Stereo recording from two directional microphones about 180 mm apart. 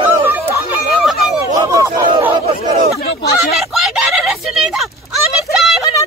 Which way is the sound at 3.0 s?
65° left (ahead or behind).